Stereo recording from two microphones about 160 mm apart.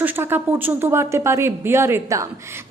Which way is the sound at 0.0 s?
15° right (ahead or behind).